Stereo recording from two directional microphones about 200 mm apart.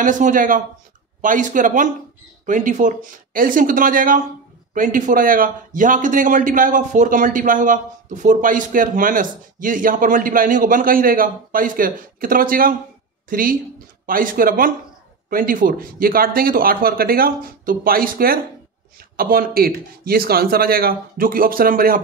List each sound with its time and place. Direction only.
0.0 s a man's voice: 40° right (ahead or behind)